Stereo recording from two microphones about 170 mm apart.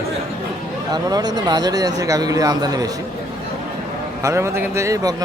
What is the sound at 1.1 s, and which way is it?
Speech, 25° right (ahead or behind).